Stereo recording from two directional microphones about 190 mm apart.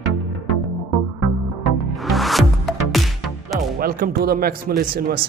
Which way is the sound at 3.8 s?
50° right (ahead or behind).